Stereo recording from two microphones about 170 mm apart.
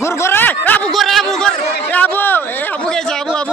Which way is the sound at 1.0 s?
Centre (ahead or behind).